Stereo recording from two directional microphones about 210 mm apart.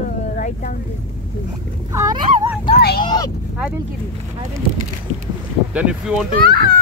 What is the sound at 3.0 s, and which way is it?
Speech, 20° left (ahead or behind).